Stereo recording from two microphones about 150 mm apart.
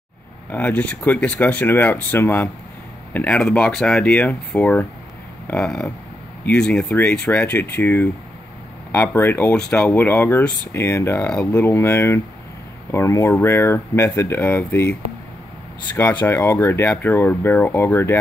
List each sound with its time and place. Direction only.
0.5 s speech: 10° left (ahead or behind)
16.0 s speech: 15° left (ahead or behind)